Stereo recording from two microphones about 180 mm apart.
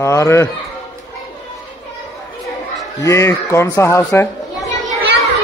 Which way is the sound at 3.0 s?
15° left (ahead or behind).